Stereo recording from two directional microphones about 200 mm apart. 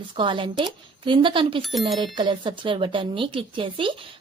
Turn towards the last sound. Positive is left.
turn(degrees=-25)  # may be behind; listen again after turning